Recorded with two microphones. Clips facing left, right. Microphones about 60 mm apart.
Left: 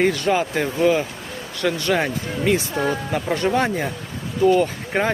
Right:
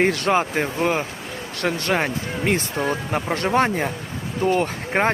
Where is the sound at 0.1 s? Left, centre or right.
Right.